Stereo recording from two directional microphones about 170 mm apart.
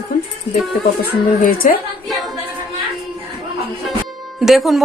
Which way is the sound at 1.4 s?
55° left (ahead or behind).